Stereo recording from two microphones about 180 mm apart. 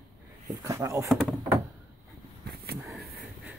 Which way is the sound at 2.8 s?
Centre (ahead or behind).